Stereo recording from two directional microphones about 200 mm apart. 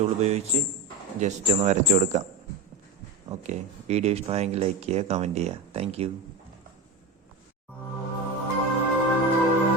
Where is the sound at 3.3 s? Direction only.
30° right (ahead or behind).